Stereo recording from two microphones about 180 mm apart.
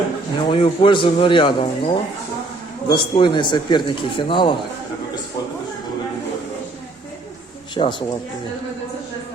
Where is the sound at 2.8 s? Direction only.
25° left (ahead or behind).